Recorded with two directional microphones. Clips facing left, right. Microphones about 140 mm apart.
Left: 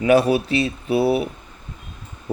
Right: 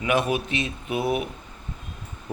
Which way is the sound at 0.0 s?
35° left (ahead or behind).